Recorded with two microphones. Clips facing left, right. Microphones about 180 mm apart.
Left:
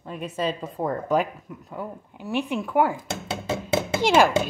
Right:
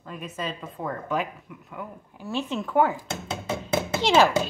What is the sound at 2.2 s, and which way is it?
Speech, 15° left (ahead or behind).